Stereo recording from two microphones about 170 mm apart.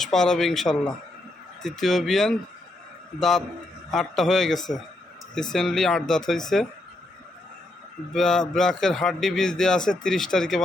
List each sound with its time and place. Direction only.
0.0 s a man's voice: 5° left (ahead or behind)
1.8 s a man's voice: centre (ahead or behind)
8.1 s a man's voice: 5° left (ahead or behind)